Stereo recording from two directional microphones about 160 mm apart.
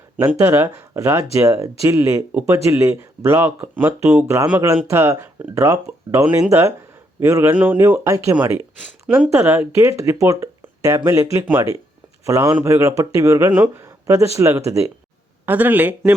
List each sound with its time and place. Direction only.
0.2 s speech: 20° right (ahead or behind)
9.6 s speech: 20° right (ahead or behind)